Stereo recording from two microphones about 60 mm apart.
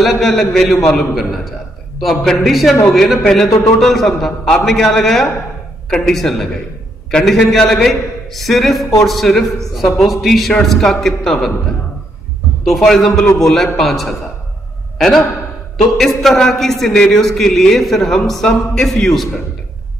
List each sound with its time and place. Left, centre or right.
0.0 s a man's voice: centre
12.6 s a man's voice: centre